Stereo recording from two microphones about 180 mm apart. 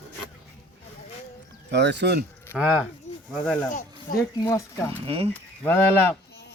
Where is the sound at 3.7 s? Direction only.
45° left (ahead or behind).